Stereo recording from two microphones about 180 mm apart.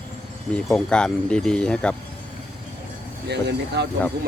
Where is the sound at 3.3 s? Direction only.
70° right (ahead or behind).